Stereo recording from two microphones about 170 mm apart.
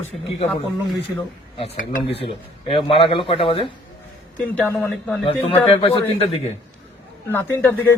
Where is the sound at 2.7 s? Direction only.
35° left (ahead or behind).